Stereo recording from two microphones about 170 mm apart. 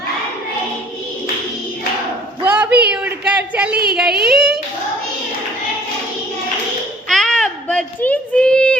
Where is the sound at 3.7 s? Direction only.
65° right (ahead or behind).